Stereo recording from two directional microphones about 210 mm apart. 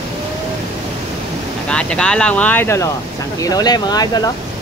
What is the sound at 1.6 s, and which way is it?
Speech, 5° left (ahead or behind).